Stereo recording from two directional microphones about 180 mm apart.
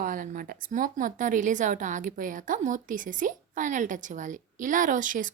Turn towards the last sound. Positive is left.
turn(degrees=-45)  # may be behind; listen again after turning